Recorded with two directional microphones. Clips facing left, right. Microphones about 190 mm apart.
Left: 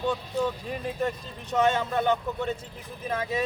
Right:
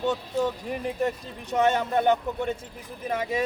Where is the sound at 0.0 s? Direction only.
20° right (ahead or behind).